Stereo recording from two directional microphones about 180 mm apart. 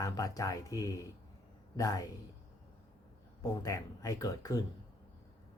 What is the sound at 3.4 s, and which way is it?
Speech, 20° left (ahead or behind).